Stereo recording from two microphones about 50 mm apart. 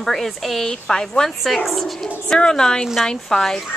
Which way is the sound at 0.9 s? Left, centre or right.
Centre.